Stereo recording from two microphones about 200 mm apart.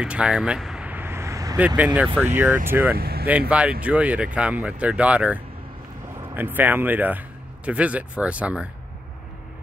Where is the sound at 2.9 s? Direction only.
50° right (ahead or behind).